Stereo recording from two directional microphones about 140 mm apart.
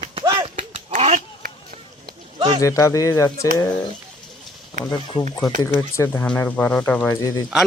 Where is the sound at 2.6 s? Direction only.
20° left (ahead or behind).